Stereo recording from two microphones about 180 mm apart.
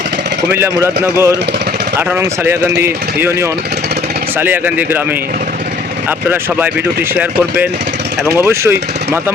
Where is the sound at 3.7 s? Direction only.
65° right (ahead or behind).